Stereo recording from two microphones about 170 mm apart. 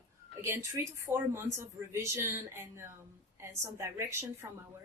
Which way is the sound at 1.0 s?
15° right (ahead or behind).